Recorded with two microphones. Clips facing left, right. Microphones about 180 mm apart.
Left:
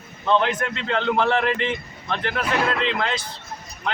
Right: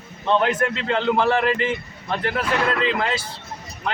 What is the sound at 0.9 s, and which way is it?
Speech, 5° right (ahead or behind).